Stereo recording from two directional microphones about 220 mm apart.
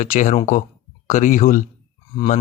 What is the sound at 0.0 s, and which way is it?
Speech, 35° left (ahead or behind).